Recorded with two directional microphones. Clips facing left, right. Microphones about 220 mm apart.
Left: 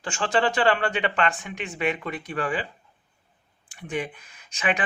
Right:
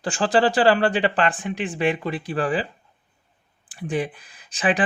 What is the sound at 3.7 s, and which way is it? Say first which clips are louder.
Speech: right 5 dB; 35° right (ahead or behind).